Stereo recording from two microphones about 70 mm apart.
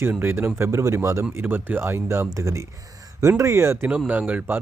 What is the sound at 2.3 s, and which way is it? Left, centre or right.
Speech, right.